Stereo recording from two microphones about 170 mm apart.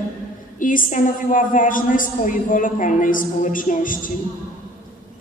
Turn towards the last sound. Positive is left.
turn(degrees=50)  # may be behind; listen again after turning